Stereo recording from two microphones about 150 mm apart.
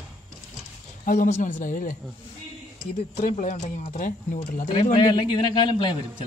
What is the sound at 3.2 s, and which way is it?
Speech, 55° left (ahead or behind).